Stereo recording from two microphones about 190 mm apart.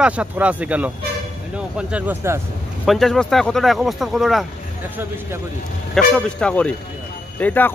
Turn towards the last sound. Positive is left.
turn(degrees=10)  # may be behind; listen again after turning